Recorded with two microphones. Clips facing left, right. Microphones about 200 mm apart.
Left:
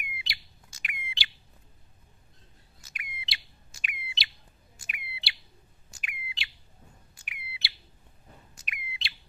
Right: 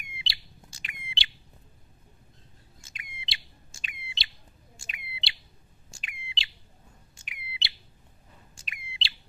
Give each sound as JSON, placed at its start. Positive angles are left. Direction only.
{"t": 0.0, "sound": "bird", "side_deg": -25}
{"t": 2.8, "sound": "bird", "side_deg": -25}